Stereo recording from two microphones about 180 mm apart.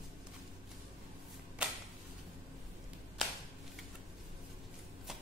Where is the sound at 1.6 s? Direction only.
5° right (ahead or behind).